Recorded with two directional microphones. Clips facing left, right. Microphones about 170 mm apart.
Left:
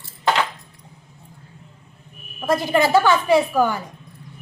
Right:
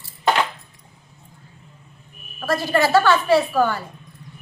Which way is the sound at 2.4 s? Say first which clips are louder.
Left 1 dB; 20° left (ahead or behind).